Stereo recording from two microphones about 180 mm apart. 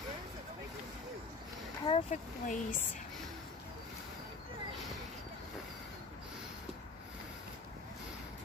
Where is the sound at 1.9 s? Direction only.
35° left (ahead or behind).